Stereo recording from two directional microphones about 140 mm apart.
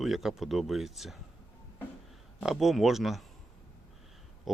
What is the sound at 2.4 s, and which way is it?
Speech, centre (ahead or behind).